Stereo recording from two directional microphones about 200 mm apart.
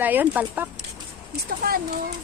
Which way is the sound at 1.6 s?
50° right (ahead or behind).